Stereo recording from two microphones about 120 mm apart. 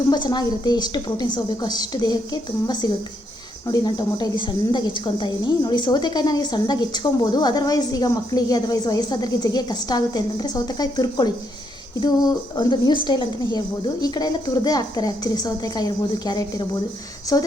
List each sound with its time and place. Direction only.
0.1 s a woman's voice: 35° left (ahead or behind)